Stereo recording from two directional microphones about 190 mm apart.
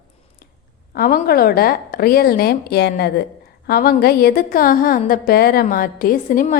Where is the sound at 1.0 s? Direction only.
50° left (ahead or behind).